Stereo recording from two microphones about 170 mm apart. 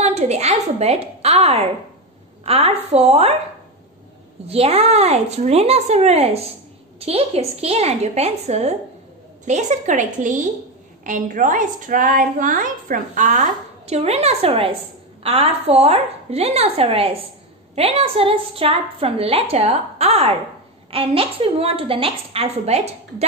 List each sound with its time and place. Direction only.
0.0 s a woman's voice: 40° right (ahead or behind)
4.5 s a woman's voice: 35° right (ahead or behind)